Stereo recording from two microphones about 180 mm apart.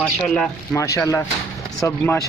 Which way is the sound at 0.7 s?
15° left (ahead or behind).